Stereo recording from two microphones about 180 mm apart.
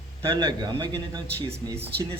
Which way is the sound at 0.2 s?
25° right (ahead or behind).